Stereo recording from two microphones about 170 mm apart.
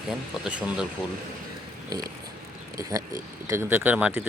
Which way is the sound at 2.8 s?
20° right (ahead or behind).